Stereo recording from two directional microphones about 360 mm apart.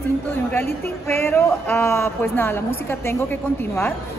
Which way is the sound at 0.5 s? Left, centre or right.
Centre.